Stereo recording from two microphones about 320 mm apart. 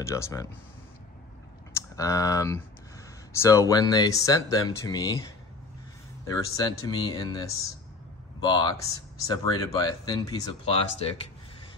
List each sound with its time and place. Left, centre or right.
0.0 s speech: centre
1.7 s speech: centre
6.2 s speech: centre